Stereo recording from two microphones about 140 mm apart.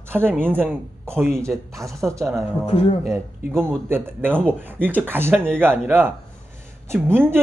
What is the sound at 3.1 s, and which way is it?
Speech, 15° right (ahead or behind).